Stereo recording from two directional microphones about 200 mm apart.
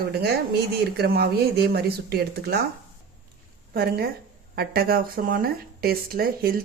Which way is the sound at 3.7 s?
50° right (ahead or behind).